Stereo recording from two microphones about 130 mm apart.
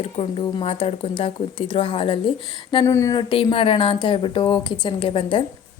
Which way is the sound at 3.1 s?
45° left (ahead or behind).